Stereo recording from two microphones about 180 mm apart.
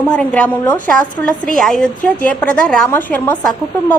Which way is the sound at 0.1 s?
5° left (ahead or behind).